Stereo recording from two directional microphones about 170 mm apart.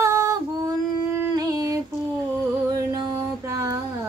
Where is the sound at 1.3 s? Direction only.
20° right (ahead or behind).